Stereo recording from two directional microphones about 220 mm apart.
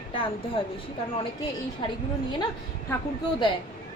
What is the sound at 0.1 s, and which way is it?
Speech, 25° left (ahead or behind).